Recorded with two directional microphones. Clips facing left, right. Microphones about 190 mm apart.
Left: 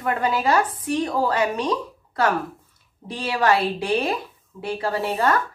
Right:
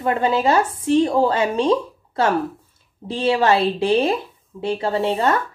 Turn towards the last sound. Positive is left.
turn(degrees=-25)  # may be behind; listen again after turning